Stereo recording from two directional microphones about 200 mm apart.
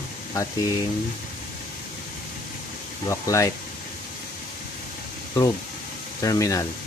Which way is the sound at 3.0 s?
15° left (ahead or behind).